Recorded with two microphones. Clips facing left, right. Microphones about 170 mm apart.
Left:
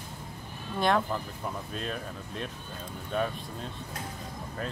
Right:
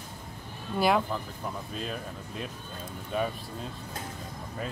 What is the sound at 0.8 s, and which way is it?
A man's voice, 5° right (ahead or behind).